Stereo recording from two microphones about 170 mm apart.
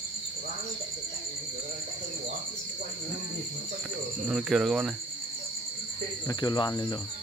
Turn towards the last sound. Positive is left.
turn(degrees=25)  # may be behind; listen again after turning